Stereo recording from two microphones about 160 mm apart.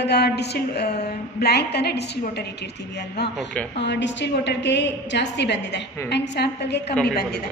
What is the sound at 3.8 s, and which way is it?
A woman's voice, 90° left.